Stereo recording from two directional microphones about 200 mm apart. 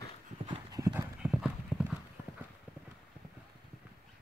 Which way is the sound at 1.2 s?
Centre (ahead or behind).